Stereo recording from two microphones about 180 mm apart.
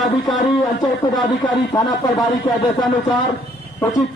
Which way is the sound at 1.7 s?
20° left (ahead or behind).